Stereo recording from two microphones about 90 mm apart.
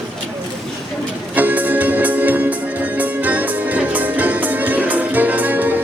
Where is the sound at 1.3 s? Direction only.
20° right (ahead or behind).